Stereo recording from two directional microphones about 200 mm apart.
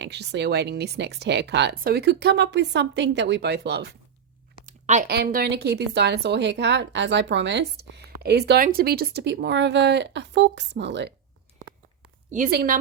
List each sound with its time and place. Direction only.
0.0 s speech: 55° right (ahead or behind)
4.6 s a sound: 35° right (ahead or behind)
5.0 s speech: 50° right (ahead or behind)
12.3 s a woman's voice: 45° right (ahead or behind)